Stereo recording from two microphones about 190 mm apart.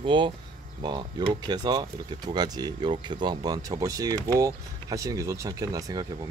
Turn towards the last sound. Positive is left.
turn(degrees=-20)  # may be behind; listen again after turning